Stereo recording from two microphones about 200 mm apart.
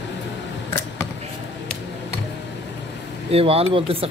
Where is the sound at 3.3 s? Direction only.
30° right (ahead or behind).